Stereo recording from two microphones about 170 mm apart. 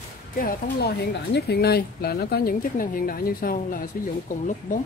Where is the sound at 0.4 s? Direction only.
70° left (ahead or behind).